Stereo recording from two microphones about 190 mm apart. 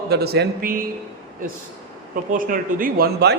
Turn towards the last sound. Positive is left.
turn(degrees=-55)  # may be behind; listen again after turning